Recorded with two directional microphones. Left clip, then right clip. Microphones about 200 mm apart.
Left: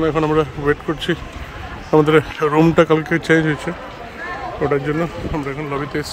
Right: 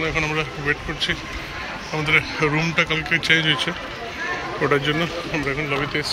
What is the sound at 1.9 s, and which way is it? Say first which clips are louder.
Speech: left 7 dB; 45° left (ahead or behind).